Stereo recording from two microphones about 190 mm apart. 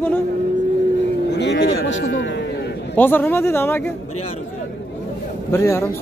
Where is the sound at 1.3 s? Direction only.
65° left (ahead or behind).